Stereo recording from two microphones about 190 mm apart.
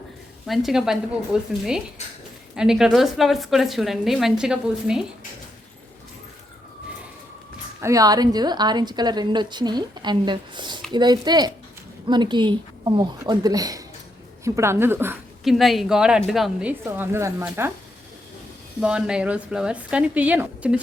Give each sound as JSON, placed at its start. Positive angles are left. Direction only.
{"t": 0.4, "sound": "a woman's voice", "side_deg": 0}
{"t": 7.8, "sound": "a woman's voice", "side_deg": -15}
{"t": 15.4, "sound": "a woman's voice", "side_deg": 0}
{"t": 18.8, "sound": "a woman's voice", "side_deg": -5}